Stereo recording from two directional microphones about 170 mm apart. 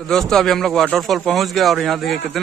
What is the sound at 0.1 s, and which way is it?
A man's voice, 5° left (ahead or behind).